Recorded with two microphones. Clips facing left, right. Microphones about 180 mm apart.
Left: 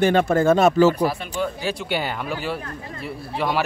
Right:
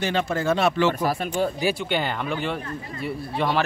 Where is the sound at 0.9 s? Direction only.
45° right (ahead or behind).